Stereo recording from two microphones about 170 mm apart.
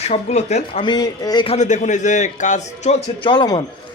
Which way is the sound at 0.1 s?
40° left (ahead or behind).